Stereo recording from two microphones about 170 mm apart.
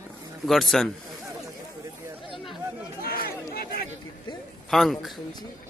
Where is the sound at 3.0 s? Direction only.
60° left (ahead or behind).